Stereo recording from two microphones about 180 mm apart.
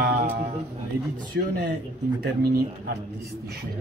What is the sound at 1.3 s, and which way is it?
Speech, 70° right (ahead or behind).